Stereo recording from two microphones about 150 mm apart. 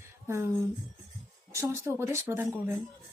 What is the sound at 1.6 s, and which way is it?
Speech, 20° right (ahead or behind).